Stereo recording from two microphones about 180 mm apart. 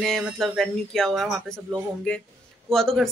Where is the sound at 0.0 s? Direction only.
Centre (ahead or behind).